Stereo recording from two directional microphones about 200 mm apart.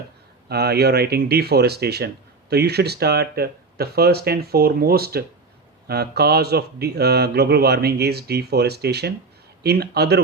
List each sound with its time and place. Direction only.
0.4 s speech: 55° right (ahead or behind)